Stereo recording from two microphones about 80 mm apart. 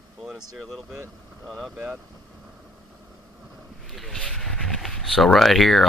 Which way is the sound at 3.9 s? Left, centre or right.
Centre.